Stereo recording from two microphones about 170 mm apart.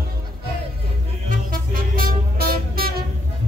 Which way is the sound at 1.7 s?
60° right (ahead or behind).